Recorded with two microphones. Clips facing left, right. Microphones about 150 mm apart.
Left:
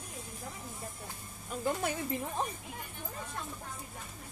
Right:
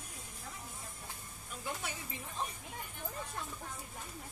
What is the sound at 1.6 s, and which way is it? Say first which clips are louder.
Speech: left 9 dB; 50° left (ahead or behind).